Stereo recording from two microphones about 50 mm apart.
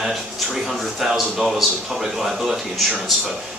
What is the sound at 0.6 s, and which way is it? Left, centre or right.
Speech, centre.